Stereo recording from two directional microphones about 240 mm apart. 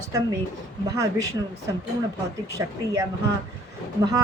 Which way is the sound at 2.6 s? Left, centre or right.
Centre.